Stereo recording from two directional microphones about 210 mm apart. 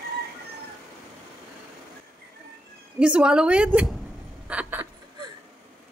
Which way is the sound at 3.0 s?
5° right (ahead or behind).